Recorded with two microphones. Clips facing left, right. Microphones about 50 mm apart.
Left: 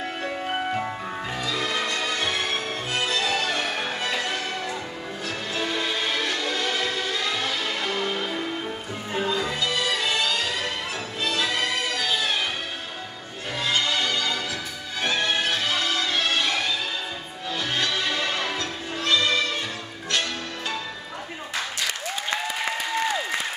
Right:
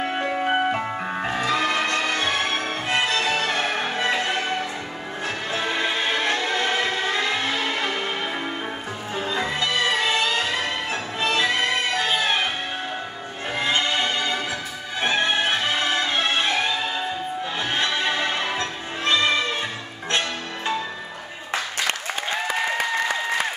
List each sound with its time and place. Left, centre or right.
0.2 s music: right
1.2 s music: right
5.5 s music: right
9.3 s music: right
13.6 s music: right